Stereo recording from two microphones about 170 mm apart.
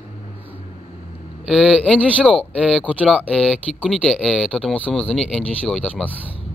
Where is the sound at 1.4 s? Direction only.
Centre (ahead or behind).